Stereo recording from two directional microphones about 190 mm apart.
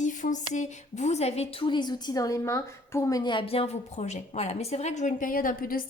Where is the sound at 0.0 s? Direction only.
40° left (ahead or behind).